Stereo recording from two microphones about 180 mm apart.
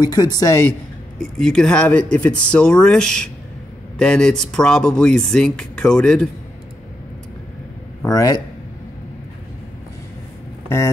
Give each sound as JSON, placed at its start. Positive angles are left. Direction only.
{"t": 0.0, "sound": "speech", "side_deg": 20}
{"t": 1.4, "sound": "speech", "side_deg": 5}
{"t": 8.0, "sound": "a man's voice", "side_deg": 20}